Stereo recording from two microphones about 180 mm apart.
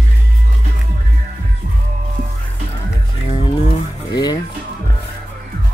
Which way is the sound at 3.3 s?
30° left (ahead or behind).